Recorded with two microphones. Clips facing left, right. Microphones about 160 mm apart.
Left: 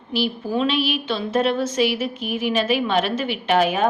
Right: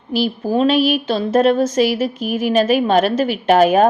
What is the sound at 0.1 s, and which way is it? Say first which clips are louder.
A woman's voice: right 5 dB; 40° right (ahead or behind).